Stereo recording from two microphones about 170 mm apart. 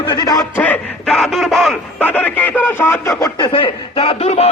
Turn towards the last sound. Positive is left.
turn(degrees=40)  # may be behind; listen again after turning